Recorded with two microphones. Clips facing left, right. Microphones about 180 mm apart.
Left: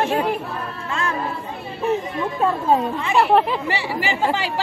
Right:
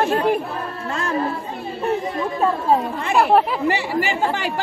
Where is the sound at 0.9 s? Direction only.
45° right (ahead or behind).